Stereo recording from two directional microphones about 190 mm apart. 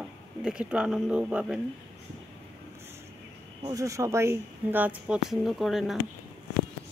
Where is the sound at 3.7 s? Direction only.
15° right (ahead or behind); by 6.0 s centre (ahead or behind).